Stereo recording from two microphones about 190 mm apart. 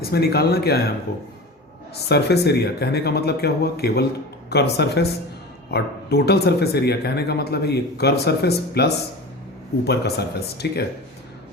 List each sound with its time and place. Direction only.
0.1 s speech: 55° left (ahead or behind)
2.0 s speech: 60° left (ahead or behind)